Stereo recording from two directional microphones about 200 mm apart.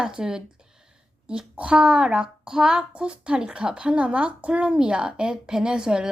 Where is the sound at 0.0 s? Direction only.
5° right (ahead or behind).